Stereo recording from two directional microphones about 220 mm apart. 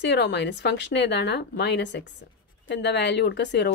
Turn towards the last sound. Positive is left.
turn(degrees=50)  # may be behind; listen again after turning